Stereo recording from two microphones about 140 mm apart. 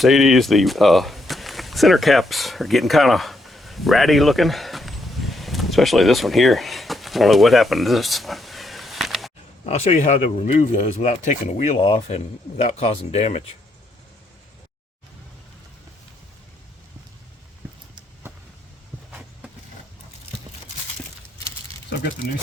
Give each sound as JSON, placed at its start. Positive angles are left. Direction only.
{"t": 0.0, "sound": "speech", "side_deg": 0}
{"t": 9.6, "sound": "speech", "side_deg": 50}